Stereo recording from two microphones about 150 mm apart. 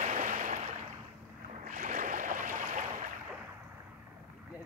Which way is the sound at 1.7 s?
60° right (ahead or behind).